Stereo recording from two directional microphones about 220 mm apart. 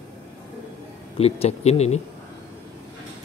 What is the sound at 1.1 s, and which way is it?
Speech, 25° left (ahead or behind).